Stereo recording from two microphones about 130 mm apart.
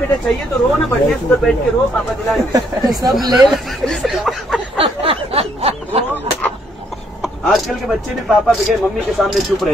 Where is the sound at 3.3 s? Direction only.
Centre (ahead or behind).